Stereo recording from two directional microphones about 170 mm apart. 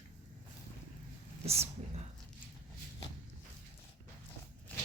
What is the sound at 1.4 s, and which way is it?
Speech, 35° right (ahead or behind).